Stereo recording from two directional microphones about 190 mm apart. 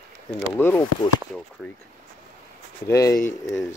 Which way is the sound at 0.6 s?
10° left (ahead or behind).